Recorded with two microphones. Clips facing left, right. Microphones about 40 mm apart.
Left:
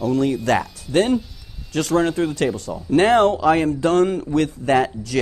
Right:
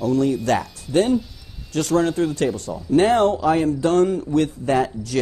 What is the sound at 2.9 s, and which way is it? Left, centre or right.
A man's voice, left.